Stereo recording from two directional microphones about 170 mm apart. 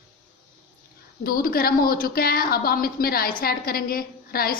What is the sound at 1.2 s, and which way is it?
A woman's voice, 60° left (ahead or behind).